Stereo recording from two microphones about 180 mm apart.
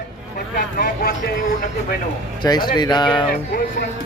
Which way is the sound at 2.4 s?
25° left (ahead or behind).